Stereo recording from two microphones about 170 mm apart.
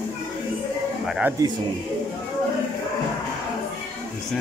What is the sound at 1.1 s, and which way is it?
Speech, 5° right (ahead or behind).